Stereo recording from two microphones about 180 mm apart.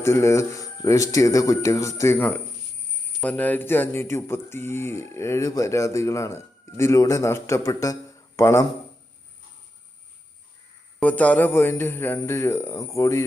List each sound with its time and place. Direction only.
0.0 s speech: 15° left (ahead or behind)
11.0 s speech: 10° left (ahead or behind)